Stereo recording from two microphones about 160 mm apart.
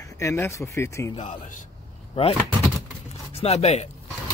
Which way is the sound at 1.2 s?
50° left (ahead or behind).